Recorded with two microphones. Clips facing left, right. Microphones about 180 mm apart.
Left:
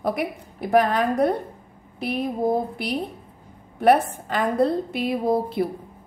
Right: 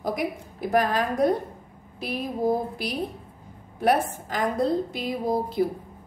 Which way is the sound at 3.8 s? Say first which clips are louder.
Left 5 dB; 60° left (ahead or behind).